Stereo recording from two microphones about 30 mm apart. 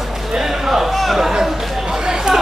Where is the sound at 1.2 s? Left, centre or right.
Centre.